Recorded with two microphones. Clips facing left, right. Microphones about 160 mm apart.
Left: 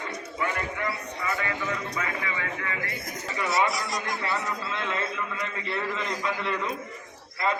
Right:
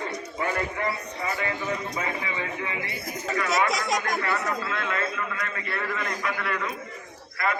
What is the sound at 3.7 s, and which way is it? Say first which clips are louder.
Speech: right 4 dB; 90° right.